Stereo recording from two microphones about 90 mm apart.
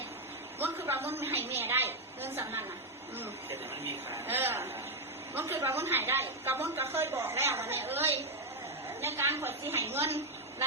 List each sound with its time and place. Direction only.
0.6 s a woman's voice: 25° right (ahead or behind)
4.3 s a woman's voice: 25° right (ahead or behind)